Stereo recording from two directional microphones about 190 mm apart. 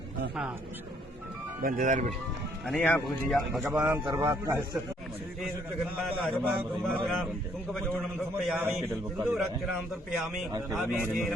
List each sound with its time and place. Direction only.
1.6 s speech: 45° right (ahead or behind)
2.6 s speech: 5° left (ahead or behind)
3.8 s a man's voice: 20° right (ahead or behind)
6.0 s speech: centre (ahead or behind)
8.4 s speech: 5° right (ahead or behind)
10.2 s speech: centre (ahead or behind)